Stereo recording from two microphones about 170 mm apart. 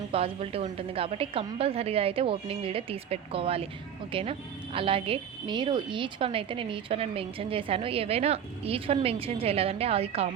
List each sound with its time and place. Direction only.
0.1 s a woman's voice: 35° right (ahead or behind)